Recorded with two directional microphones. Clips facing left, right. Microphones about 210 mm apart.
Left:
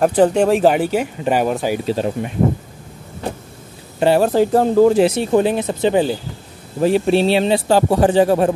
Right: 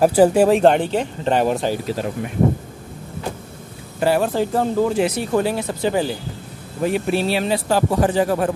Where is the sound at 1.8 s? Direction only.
25° left (ahead or behind).